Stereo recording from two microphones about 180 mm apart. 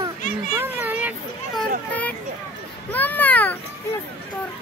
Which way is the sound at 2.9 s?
10° left (ahead or behind).